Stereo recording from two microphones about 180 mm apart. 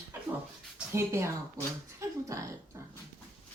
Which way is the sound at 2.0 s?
15° right (ahead or behind).